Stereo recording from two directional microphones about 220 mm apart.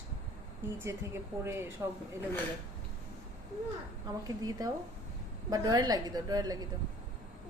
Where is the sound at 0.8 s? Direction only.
10° right (ahead or behind).